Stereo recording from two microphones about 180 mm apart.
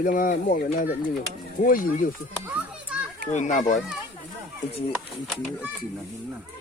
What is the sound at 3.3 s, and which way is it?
Speech, 45° left (ahead or behind).